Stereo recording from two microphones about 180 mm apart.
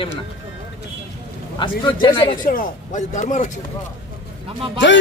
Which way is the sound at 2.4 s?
50° left (ahead or behind).